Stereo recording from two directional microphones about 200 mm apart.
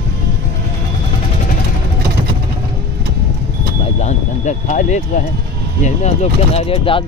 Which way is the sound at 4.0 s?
35° left (ahead or behind).